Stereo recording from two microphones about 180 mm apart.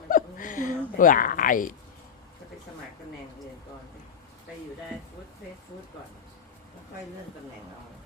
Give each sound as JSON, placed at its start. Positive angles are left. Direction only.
{"t": 0.1, "sound": "dog", "side_deg": 50}